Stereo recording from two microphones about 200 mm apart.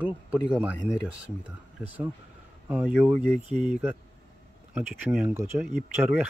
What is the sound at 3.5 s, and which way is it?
Speech, 35° right (ahead or behind).